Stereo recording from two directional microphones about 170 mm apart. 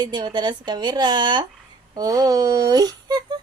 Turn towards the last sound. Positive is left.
turn(degrees=-25)  # may be behind; listen again after turning